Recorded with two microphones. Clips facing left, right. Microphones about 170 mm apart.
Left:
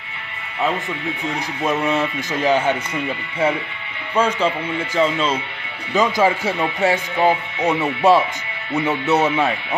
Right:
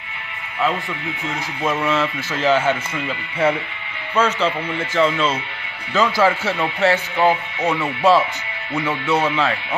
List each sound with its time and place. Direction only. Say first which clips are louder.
1.3 s speech: even; 15° left (ahead or behind)